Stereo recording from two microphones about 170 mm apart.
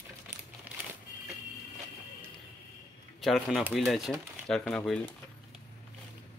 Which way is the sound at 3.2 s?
Centre (ahead or behind).